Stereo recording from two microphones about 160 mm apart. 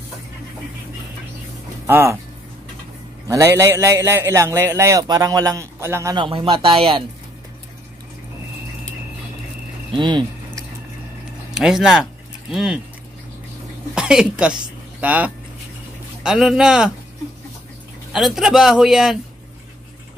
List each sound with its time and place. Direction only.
1.9 s a man's voice: 15° right (ahead or behind)
3.3 s a man's voice: 20° right (ahead or behind)
6.1 s speech: 35° right (ahead or behind)
9.9 s speech: 30° right (ahead or behind)
11.5 s speech: 5° right (ahead or behind)
13.9 s a woman's voice: 5° right (ahead or behind)
18.1 s a man's voice: centre (ahead or behind)